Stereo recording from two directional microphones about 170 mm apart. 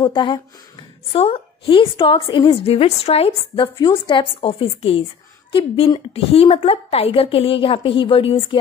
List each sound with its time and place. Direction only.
0.0 s a woman's voice: 25° left (ahead or behind)